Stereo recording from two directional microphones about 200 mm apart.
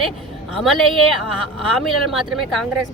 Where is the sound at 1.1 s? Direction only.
Centre (ahead or behind).